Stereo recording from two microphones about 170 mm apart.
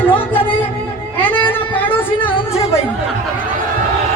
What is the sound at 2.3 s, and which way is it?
Chatter, 35° left (ahead or behind).